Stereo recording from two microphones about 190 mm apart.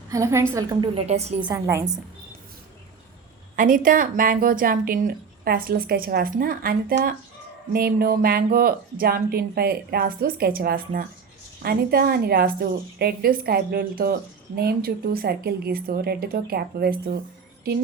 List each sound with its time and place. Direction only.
0.1 s a woman's voice: 15° right (ahead or behind)
0.9 s a woman's voice: 35° right (ahead or behind)
1.5 s a woman's voice: 15° right (ahead or behind)
3.5 s speech: 45° right (ahead or behind)